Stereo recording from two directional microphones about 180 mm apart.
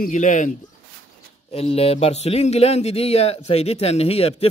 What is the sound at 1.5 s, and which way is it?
Speech, 35° left (ahead or behind).